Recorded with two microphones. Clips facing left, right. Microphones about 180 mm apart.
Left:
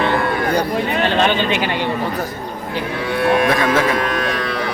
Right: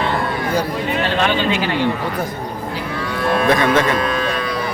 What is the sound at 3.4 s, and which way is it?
Speech, 5° left (ahead or behind).